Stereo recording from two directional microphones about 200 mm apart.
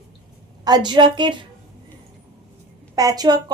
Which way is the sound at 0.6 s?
20° right (ahead or behind).